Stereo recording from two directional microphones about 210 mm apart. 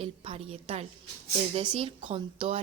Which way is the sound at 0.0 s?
25° right (ahead or behind).